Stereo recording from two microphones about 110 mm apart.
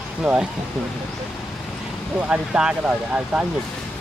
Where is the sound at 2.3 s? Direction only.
10° right (ahead or behind).